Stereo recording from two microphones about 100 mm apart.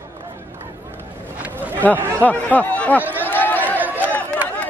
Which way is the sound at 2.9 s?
20° right (ahead or behind).